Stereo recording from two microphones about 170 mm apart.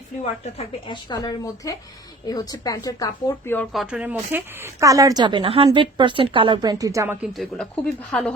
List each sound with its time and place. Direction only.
0.2 s a woman's voice: 40° left (ahead or behind); by 3.7 s 15° left (ahead or behind)
3.7 s speech: 5° right (ahead or behind)
7.3 s speech: 5° left (ahead or behind)